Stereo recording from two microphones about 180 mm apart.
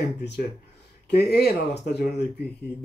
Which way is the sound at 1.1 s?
65° left (ahead or behind).